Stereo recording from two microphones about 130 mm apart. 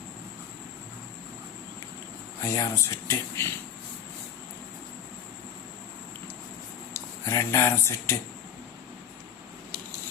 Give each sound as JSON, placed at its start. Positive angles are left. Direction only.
{"t": 2.4, "sound": "speech", "side_deg": 25}
{"t": 6.9, "sound": "speech", "side_deg": 20}